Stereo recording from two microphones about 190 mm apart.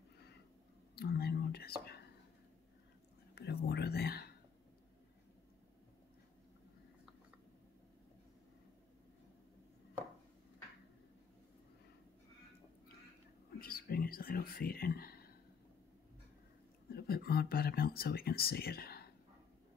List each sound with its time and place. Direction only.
0.9 s whispering: 55° left (ahead or behind)
3.3 s whispering: 60° left (ahead or behind)
13.6 s speech: 50° left (ahead or behind)
16.9 s speech: 55° left (ahead or behind)